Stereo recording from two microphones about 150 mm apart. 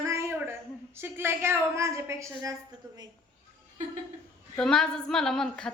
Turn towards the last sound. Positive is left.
turn(degrees=5)  # may be behind; listen again after turning